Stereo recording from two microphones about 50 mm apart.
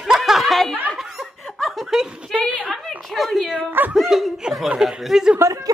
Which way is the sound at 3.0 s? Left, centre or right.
Centre.